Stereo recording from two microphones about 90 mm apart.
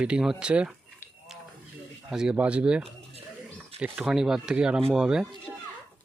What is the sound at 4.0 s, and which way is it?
Speech, 5° right (ahead or behind).